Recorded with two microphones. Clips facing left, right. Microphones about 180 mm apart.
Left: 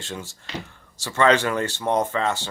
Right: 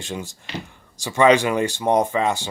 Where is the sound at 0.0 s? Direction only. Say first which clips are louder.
Right 4 dB; 15° right (ahead or behind).